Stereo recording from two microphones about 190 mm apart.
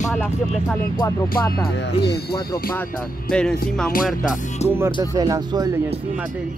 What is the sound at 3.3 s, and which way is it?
Speech, 5° left (ahead or behind).